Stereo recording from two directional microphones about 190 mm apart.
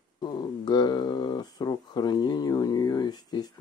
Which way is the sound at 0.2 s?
25° left (ahead or behind).